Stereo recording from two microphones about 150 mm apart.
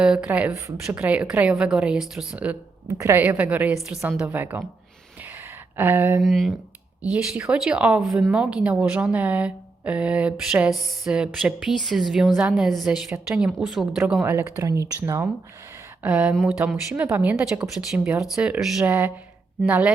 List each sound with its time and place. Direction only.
0.0 s speech: 5° right (ahead or behind)
2.8 s a woman's voice: 20° right (ahead or behind)
5.7 s speech: 15° right (ahead or behind)
6.2 s a woman's voice: centre (ahead or behind)
14.3 s speech: 20° right (ahead or behind)
16.0 s speech: 10° right (ahead or behind)